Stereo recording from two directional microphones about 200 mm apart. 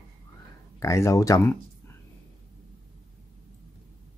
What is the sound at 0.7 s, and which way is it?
Speech, 15° left (ahead or behind).